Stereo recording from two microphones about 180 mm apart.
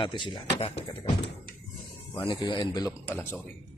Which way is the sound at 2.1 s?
25° left (ahead or behind).